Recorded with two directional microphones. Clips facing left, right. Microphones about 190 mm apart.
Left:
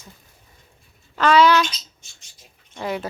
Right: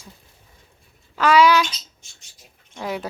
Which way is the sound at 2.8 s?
Centre (ahead or behind).